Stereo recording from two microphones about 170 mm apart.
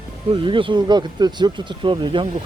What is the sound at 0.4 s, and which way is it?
Speech, 30° right (ahead or behind).